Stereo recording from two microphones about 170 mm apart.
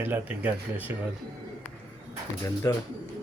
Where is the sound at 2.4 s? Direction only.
20° left (ahead or behind).